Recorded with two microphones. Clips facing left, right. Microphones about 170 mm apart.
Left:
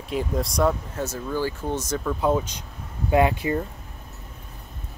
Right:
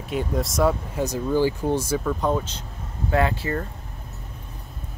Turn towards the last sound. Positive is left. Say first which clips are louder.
# left 2 dB
turn(degrees=15)  # may be behind; listen again after turning